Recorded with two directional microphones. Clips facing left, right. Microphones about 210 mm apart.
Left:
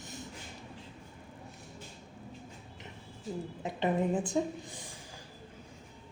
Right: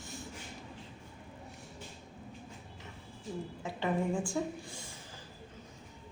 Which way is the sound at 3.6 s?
20° left (ahead or behind).